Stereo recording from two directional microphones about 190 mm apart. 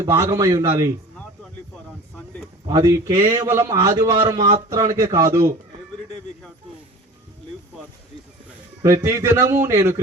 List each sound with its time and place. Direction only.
0.0 s a man's voice: 15° right (ahead or behind)
2.6 s a man's voice: 20° right (ahead or behind)
4.4 s speech: 35° right (ahead or behind)
4.7 s a man's voice: 15° right (ahead or behind)
8.8 s a man's voice: 15° right (ahead or behind)